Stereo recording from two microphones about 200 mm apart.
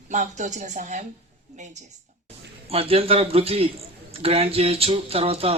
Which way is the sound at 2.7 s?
30° right (ahead or behind).